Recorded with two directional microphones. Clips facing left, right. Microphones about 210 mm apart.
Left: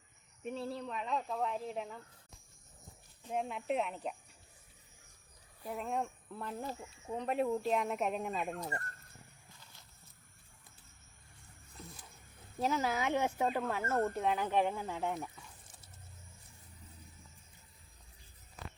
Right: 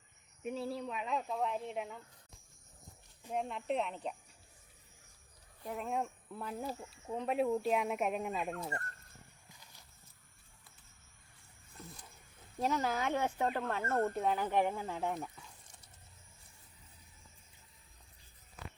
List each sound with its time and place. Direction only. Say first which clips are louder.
0.4 s speech: right 1 dB; centre (ahead or behind)
3.3 s speech: left 1 dB; 5° left (ahead or behind)
5.6 s speech: even; centre (ahead or behind)
12.5 s speech: even; 5° left (ahead or behind)